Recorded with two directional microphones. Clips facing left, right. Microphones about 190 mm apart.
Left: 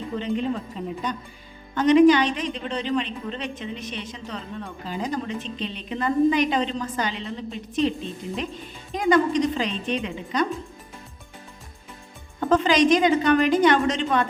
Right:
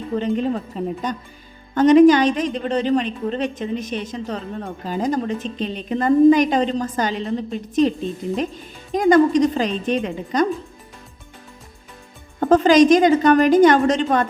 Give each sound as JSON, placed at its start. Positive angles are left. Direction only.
{"t": 0.1, "sound": "a woman's voice", "side_deg": -45}
{"t": 9.0, "sound": "a woman's voice", "side_deg": -45}
{"t": 12.4, "sound": "a woman's voice", "side_deg": -45}